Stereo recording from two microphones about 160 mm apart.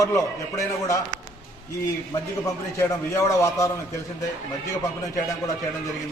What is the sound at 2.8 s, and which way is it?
Speech, 20° left (ahead or behind).